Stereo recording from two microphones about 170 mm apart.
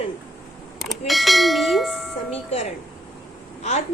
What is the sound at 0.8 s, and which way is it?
Speech, centre (ahead or behind).